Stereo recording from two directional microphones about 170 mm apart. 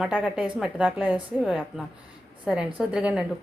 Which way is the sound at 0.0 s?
5° right (ahead or behind).